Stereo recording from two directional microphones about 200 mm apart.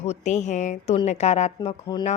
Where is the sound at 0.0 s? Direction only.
35° left (ahead or behind).